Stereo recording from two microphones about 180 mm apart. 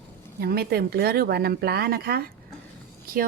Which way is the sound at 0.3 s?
60° right (ahead or behind).